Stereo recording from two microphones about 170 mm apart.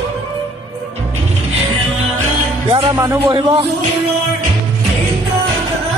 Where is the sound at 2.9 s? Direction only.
15° right (ahead or behind).